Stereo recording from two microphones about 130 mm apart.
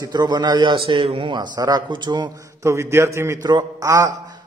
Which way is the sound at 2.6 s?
20° right (ahead or behind).